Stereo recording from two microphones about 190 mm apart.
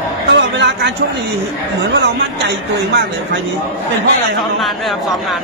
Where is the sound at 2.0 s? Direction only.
60° right (ahead or behind).